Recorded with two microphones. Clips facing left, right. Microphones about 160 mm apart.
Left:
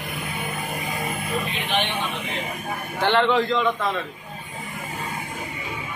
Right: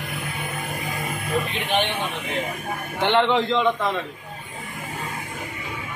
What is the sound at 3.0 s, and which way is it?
Speech, 20° right (ahead or behind).